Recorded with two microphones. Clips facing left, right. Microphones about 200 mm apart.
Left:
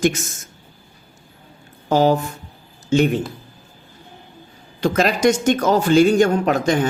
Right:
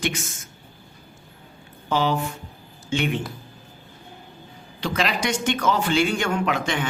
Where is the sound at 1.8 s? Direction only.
40° left (ahead or behind).